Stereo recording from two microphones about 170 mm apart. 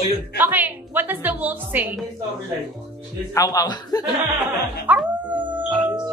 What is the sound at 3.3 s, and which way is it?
Speech, 20° left (ahead or behind).